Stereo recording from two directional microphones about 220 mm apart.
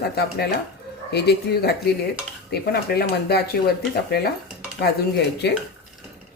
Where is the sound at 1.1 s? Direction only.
45° left (ahead or behind).